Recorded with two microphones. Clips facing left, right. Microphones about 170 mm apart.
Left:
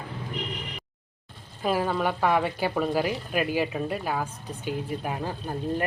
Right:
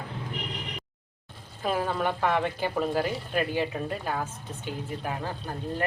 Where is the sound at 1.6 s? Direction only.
5° left (ahead or behind).